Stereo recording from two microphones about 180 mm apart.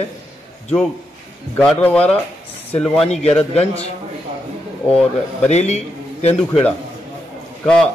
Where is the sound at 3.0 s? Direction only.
35° left (ahead or behind).